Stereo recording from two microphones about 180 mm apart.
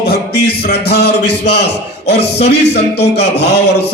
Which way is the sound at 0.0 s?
65° left (ahead or behind).